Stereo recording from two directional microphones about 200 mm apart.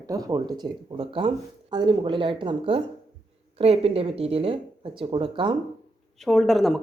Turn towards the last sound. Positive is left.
turn(degrees=0)  # may be behind; listen again after turning